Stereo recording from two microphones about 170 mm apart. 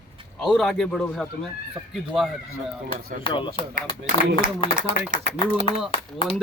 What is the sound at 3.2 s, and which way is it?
Speech, 30° left (ahead or behind).